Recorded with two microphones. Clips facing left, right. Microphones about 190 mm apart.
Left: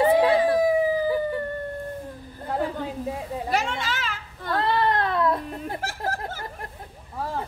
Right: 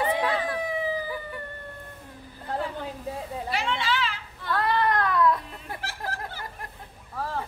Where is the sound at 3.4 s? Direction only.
45° left (ahead or behind).